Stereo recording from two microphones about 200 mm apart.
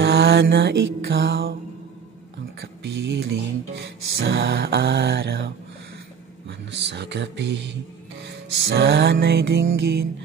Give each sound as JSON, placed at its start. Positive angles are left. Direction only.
{"t": 0.0, "sound": "mantra", "side_deg": -55}
{"t": 2.6, "sound": "music", "side_deg": -60}
{"t": 6.7, "sound": "music", "side_deg": -60}